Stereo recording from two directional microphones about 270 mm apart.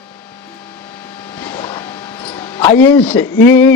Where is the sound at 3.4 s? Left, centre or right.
Centre.